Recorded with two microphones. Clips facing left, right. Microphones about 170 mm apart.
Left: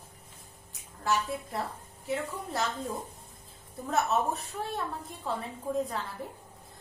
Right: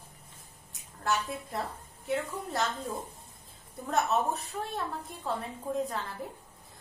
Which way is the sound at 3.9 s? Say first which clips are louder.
Even; centre (ahead or behind).